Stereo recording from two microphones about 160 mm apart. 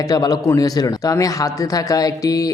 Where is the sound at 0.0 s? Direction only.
25° left (ahead or behind).